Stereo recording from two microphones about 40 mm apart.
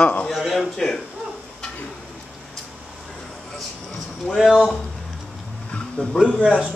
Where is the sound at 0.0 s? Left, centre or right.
Left.